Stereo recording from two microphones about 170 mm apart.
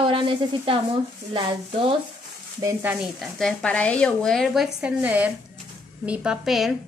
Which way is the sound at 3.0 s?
Centre (ahead or behind).